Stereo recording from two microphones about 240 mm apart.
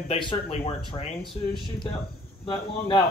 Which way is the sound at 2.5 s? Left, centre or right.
Left.